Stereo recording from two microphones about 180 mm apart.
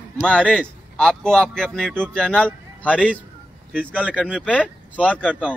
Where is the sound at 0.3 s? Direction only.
5° left (ahead or behind).